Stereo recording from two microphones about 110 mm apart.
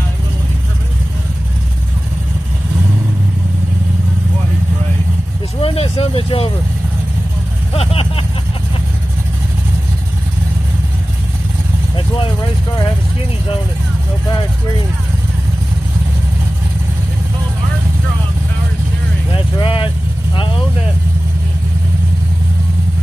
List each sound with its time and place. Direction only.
5.6 s vehicle: 60° left (ahead or behind)
7.7 s vehicle: 60° left (ahead or behind)
19.3 s vehicle: 50° left (ahead or behind)